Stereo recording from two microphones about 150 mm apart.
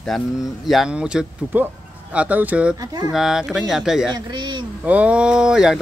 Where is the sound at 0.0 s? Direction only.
Centre (ahead or behind).